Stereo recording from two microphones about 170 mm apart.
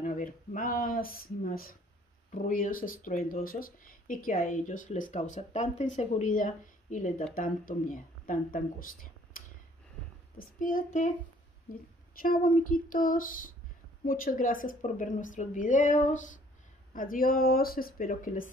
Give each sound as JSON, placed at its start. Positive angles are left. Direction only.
{"t": 0.0, "sound": "speech", "side_deg": 50}
{"t": 12.2, "sound": "speech", "side_deg": 60}